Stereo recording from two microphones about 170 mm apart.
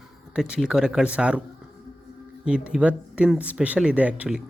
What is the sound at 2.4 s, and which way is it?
Speech, 5° right (ahead or behind).